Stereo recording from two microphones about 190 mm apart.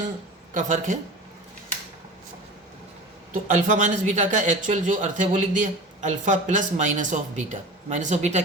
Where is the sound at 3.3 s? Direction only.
40° right (ahead or behind).